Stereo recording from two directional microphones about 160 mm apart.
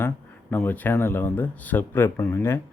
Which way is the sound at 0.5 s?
10° left (ahead or behind).